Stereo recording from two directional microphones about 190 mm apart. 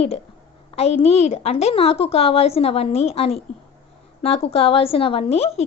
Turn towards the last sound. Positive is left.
turn(degrees=35)  # may be behind; listen again after turning